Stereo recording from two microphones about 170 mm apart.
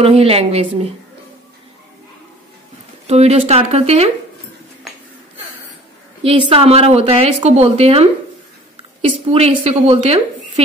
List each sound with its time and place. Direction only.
0.0 s a woman's voice: 35° right (ahead or behind)
3.1 s a woman's voice: 40° right (ahead or behind)
6.2 s a woman's voice: 35° right (ahead or behind)